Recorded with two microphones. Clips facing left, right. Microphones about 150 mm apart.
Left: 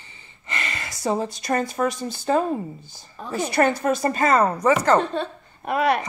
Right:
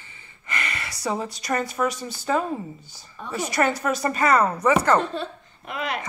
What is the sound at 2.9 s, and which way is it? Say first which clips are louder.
Speech: left 1 dB; 40° left (ahead or behind).